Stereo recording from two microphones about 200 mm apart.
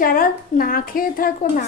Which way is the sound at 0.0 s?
45° left (ahead or behind).